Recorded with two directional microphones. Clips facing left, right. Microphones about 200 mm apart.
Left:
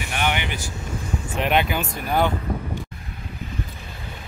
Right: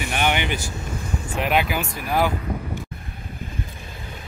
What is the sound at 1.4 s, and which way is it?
Speech, 5° right (ahead or behind).